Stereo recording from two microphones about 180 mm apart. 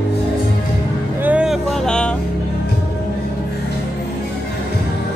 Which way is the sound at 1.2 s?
5° right (ahead or behind).